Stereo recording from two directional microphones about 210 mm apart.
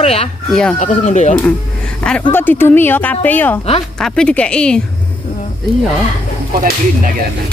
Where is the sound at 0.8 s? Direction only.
35° left (ahead or behind).